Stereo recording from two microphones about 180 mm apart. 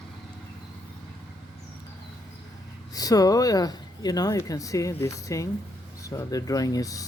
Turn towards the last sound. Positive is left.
turn(degrees=20)  # may be behind; listen again after turning